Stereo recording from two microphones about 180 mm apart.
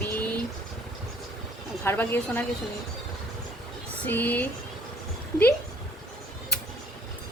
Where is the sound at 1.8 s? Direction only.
15° left (ahead or behind).